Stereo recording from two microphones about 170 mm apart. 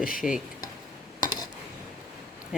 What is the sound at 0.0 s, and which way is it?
Speech, 55° left (ahead or behind).